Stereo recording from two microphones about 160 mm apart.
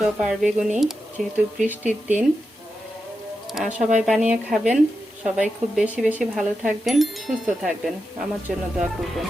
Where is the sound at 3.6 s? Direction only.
50° right (ahead or behind).